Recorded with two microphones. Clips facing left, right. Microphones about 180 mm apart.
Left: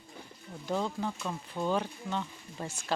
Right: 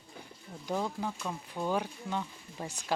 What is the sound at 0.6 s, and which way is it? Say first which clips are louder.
Speech: left 1 dB; 10° right (ahead or behind).